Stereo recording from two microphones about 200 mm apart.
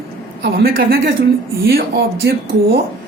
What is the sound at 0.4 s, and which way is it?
Speech, 50° right (ahead or behind).